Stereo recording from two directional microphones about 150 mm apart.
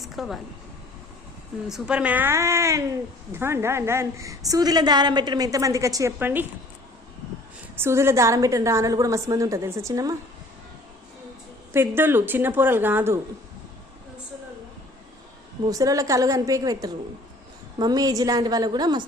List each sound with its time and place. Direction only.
0.0 s speech: centre (ahead or behind)
1.6 s a woman's voice: 5° right (ahead or behind)
7.8 s a woman's voice: 15° right (ahead or behind)
11.7 s a woman's voice: 15° right (ahead or behind)
15.7 s a woman's voice: 20° right (ahead or behind)